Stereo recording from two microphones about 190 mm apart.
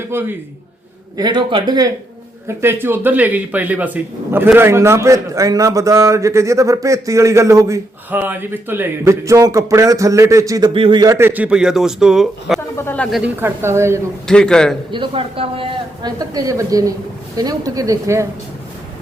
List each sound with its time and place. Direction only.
0.1 s a woman's voice: 10° right (ahead or behind)
12.5 s speech: 10° left (ahead or behind)
13.4 s speech: 15° right (ahead or behind)
14.3 s a man's voice: 5° left (ahead or behind)
14.9 s a woman's voice: 25° right (ahead or behind)